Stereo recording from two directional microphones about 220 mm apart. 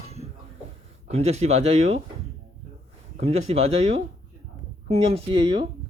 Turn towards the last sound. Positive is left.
turn(degrees=-25)  # may be behind; listen again after turning